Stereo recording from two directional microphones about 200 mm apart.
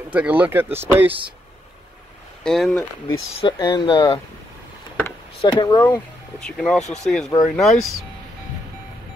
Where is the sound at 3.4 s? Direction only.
25° left (ahead or behind).